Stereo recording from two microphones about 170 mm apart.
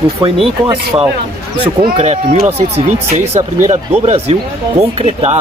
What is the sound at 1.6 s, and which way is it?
Speech, 35° right (ahead or behind).